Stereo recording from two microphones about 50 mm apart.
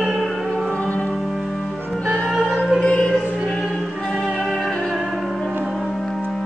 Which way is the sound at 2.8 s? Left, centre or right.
Left.